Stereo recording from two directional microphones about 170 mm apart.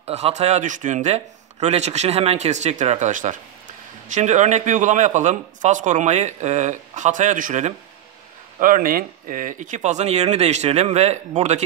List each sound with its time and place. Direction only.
0.0 s a man's voice: 40° right (ahead or behind)